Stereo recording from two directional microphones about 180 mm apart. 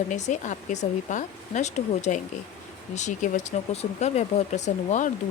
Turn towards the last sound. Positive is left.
turn(degrees=45)  # may be behind; listen again after turning